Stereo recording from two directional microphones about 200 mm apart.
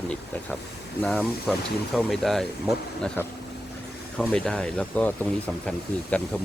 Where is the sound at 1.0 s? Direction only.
5° left (ahead or behind).